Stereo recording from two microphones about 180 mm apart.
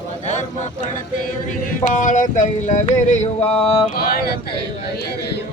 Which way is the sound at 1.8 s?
45° left (ahead or behind).